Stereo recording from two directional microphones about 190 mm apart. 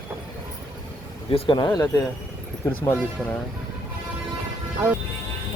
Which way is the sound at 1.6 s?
10° left (ahead or behind).